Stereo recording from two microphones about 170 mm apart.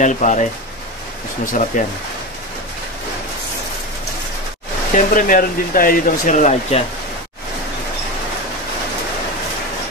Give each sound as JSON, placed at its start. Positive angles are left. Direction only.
{"t": 0.0, "sound": "speech", "side_deg": 45}
{"t": 4.9, "sound": "speech", "side_deg": 50}